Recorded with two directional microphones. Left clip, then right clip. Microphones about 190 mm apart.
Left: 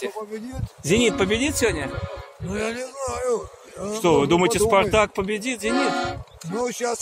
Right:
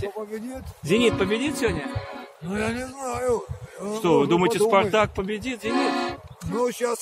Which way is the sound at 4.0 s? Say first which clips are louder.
Left 2 dB; 50° left (ahead or behind).